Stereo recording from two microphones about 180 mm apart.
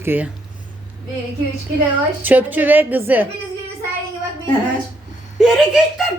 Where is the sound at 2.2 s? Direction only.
10° right (ahead or behind).